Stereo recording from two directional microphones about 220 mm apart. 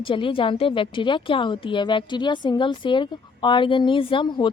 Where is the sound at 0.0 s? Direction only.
25° left (ahead or behind).